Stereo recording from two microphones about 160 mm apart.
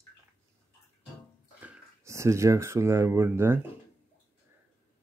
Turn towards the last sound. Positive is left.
turn(degrees=-15)  # may be behind; listen again after turning